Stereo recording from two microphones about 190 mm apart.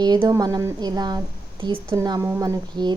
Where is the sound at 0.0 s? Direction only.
20° right (ahead or behind).